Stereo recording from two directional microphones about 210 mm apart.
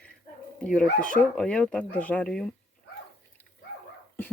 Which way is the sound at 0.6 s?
5° left (ahead or behind).